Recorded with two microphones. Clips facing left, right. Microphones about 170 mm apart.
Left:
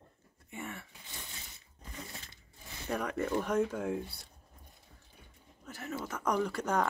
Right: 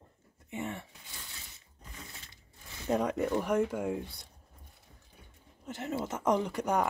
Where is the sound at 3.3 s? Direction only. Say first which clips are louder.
Left 2 dB; 10° right (ahead or behind).